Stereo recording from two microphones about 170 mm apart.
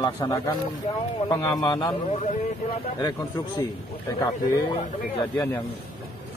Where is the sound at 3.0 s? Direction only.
25° left (ahead or behind).